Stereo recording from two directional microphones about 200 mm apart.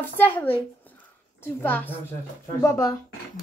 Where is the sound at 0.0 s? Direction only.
10° left (ahead or behind).